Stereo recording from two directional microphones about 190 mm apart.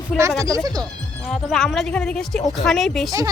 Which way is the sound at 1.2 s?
Centre (ahead or behind).